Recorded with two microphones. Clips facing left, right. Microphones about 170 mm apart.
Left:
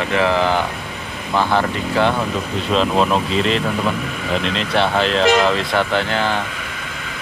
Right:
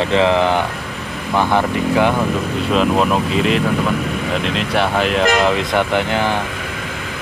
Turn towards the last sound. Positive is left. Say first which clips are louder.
# right 2 dB
turn(degrees=-15)  # may be behind; listen again after turning